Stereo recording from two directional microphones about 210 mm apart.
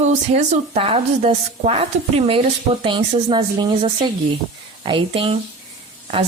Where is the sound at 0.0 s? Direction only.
30° right (ahead or behind).